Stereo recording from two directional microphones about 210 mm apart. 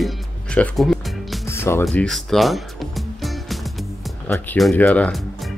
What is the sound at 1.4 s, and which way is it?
Music, 10° left (ahead or behind).